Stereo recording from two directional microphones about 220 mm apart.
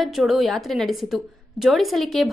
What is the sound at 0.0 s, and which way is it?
A woman's voice, centre (ahead or behind).